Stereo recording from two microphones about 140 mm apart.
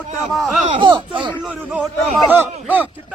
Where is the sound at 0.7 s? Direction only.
35° right (ahead or behind).